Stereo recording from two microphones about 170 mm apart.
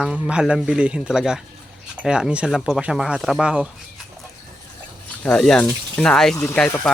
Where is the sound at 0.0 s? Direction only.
5° right (ahead or behind).